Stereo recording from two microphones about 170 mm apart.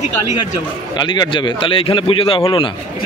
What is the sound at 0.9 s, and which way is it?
Speech, 25° left (ahead or behind).